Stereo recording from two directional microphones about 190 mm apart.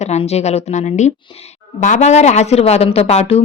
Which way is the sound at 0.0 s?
35° left (ahead or behind).